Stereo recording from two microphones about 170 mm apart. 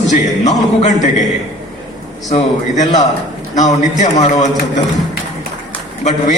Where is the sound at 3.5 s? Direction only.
45° left (ahead or behind).